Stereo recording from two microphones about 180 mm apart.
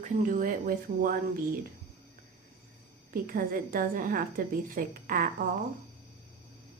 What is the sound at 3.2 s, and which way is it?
A woman's voice, 50° right (ahead or behind).